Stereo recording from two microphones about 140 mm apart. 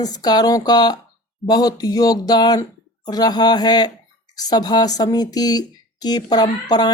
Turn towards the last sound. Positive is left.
turn(degrees=30)  # may be behind; listen again after turning